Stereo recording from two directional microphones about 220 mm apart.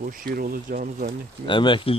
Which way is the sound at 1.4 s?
20° left (ahead or behind).